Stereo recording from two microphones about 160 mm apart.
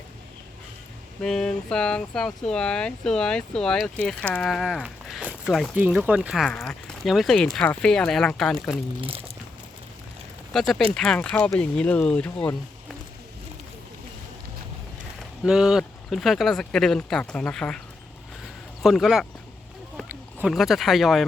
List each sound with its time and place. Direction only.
1.2 s speech: 5° left (ahead or behind)
9.0 s speech: 35° right (ahead or behind)
10.5 s speech: centre (ahead or behind)
15.4 s speech: 5° right (ahead or behind)
18.8 s speech: centre (ahead or behind)